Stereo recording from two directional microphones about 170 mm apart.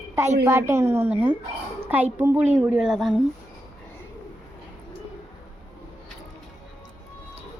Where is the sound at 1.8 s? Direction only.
10° right (ahead or behind).